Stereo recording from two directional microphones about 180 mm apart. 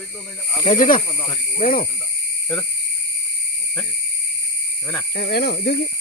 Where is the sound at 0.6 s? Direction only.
50° left (ahead or behind).